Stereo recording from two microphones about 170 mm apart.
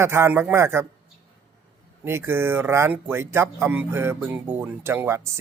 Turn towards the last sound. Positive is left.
turn(degrees=-15)  # may be behind; listen again after turning